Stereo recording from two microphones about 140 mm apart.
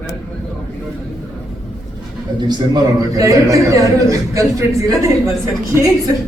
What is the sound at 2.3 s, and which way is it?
A man's voice, 30° right (ahead or behind).